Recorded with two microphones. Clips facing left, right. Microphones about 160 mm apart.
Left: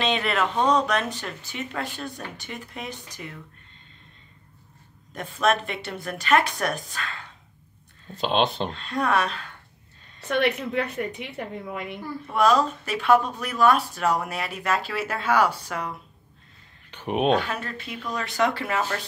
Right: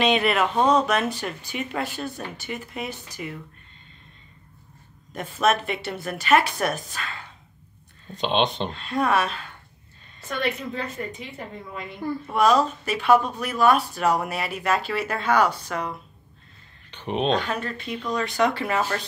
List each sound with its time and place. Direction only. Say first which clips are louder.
0.0 s speech: right 4 dB; 10° right (ahead or behind)
5.1 s speech: right 1 dB; 5° right (ahead or behind)
10.2 s a woman's voice: left 4 dB; 65° left (ahead or behind)
12.3 s speech: right 1 dB; centre (ahead or behind)
16.9 s speech: left 2 dB; 10° left (ahead or behind)